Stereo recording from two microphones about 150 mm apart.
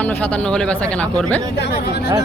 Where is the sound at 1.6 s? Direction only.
90° left.